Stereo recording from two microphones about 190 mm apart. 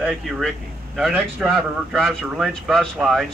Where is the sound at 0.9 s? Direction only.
5° right (ahead or behind).